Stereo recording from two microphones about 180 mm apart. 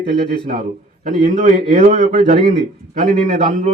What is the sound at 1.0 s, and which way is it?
Speech, 40° right (ahead or behind).